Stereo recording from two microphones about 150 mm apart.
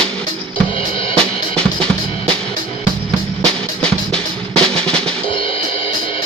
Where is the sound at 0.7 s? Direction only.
35° left (ahead or behind).